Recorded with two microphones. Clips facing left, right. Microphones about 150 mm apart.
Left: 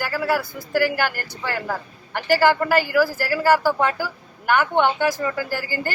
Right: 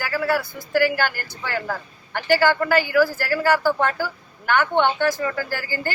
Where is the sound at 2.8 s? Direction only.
5° left (ahead or behind).